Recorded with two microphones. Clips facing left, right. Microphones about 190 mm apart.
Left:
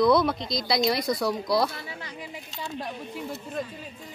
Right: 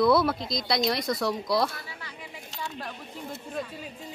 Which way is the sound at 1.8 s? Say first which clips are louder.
Left 5 dB; 20° left (ahead or behind).